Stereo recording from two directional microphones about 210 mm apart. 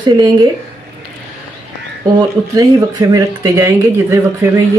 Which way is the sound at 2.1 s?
15° right (ahead or behind).